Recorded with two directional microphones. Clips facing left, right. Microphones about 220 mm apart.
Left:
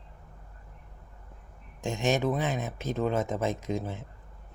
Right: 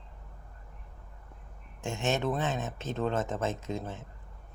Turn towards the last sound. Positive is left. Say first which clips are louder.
# left 4 dB
turn(degrees=15)  # may be behind; listen again after turning